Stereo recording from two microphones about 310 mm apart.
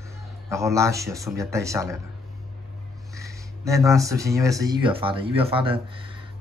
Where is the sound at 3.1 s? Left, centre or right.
Centre.